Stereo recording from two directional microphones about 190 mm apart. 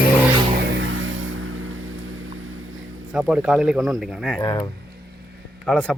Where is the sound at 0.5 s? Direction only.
65° right (ahead or behind); by 1.9 s 90° right.